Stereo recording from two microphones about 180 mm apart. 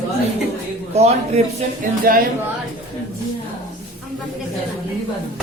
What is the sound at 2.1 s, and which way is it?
Speech, 55° right (ahead or behind).